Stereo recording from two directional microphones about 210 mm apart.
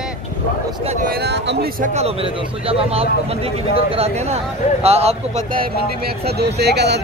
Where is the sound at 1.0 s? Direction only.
50° right (ahead or behind).